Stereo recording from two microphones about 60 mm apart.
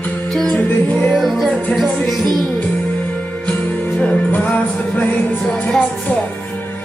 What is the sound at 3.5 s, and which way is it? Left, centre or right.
Music, left.